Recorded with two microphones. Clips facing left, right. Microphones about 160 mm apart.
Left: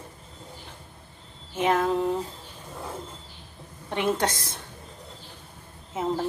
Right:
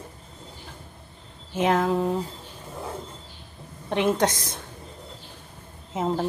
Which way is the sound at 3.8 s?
15° right (ahead or behind).